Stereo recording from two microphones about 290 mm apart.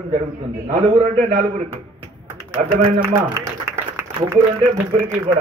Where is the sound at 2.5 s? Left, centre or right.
Right.